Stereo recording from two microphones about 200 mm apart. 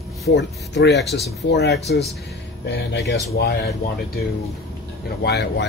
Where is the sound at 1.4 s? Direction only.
55° left (ahead or behind).